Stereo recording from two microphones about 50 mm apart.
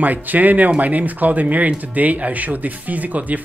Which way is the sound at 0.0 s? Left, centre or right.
Right.